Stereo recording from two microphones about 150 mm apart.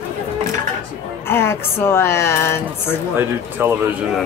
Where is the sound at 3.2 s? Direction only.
15° right (ahead or behind).